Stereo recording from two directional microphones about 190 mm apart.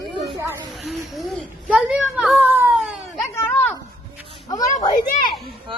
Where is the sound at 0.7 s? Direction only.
Centre (ahead or behind).